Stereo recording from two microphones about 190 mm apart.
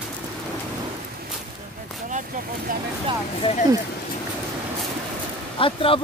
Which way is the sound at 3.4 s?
35° left (ahead or behind).